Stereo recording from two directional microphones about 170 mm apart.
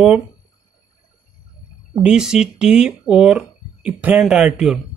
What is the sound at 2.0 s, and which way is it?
Speech, 5° right (ahead or behind).